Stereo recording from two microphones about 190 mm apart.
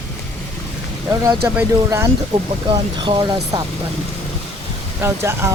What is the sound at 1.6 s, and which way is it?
Speech, 15° right (ahead or behind).